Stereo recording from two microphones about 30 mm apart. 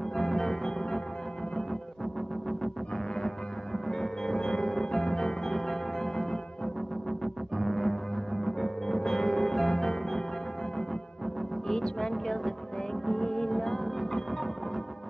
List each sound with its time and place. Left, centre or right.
0.1 s music: centre
3.2 s music: centre
11.6 s music: centre